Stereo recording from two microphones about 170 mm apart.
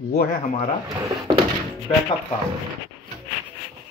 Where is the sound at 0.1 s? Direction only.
60° left (ahead or behind).